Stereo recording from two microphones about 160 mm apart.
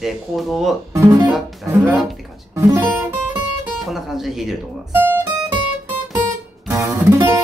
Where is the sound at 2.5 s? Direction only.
20° right (ahead or behind).